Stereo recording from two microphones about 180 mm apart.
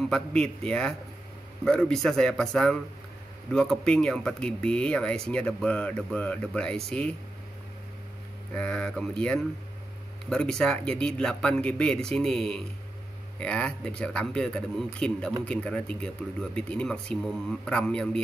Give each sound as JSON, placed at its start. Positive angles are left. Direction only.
{"t": 0.1, "sound": "speech", "side_deg": 5}
{"t": 8.5, "sound": "speech", "side_deg": 5}